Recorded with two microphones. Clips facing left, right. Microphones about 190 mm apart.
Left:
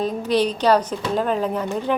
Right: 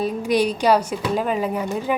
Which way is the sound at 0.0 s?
10° right (ahead or behind).